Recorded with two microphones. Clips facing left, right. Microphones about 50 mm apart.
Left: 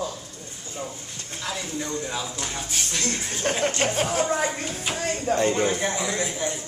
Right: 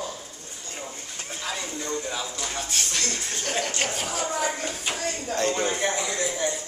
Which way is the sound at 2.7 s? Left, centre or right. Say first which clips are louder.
Left 2 dB; centre.